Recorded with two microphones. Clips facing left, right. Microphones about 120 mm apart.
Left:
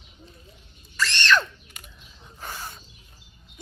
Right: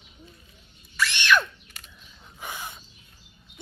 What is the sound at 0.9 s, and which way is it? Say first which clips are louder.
Screaming: even; 10° right (ahead or behind).